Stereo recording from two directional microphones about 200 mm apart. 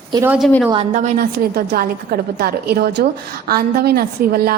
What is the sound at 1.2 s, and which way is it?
A woman's voice, 50° right (ahead or behind).